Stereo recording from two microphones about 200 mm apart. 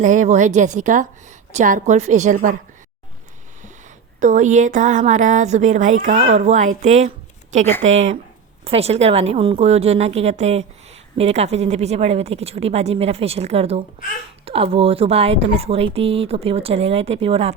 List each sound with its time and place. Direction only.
0.0 s a woman's voice: 40° right (ahead or behind)
4.2 s a woman's voice: 40° right (ahead or behind)
7.9 s speech: 70° right (ahead or behind)
8.6 s a woman's voice: 30° right (ahead or behind)